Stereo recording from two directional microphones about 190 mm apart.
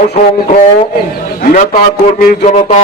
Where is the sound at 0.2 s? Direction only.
35° left (ahead or behind).